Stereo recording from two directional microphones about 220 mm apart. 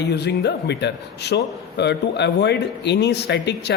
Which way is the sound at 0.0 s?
50° left (ahead or behind).